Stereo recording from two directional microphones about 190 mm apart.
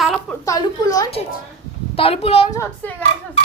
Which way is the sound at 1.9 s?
30° left (ahead or behind).